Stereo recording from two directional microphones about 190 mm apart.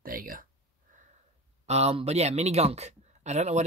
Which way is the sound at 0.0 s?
50° right (ahead or behind).